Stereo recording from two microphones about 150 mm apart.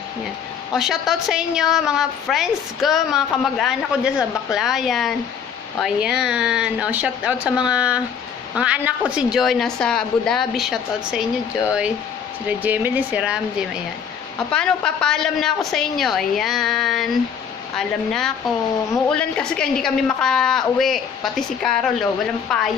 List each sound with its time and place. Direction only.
0.7 s a woman's voice: 5° right (ahead or behind)
12.4 s speech: 10° right (ahead or behind)
14.5 s a woman's voice: 5° left (ahead or behind)